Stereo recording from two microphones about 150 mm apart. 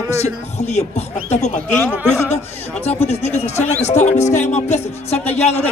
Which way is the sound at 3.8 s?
50° left (ahead or behind).